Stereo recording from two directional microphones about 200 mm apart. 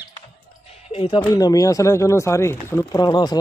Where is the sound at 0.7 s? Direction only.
30° left (ahead or behind).